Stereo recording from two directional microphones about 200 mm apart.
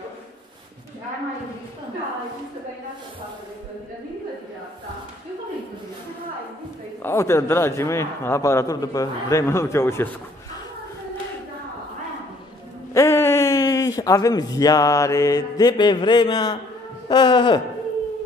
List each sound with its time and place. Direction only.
7.0 s a man's voice: 10° left (ahead or behind)
12.9 s speech: 15° left (ahead or behind)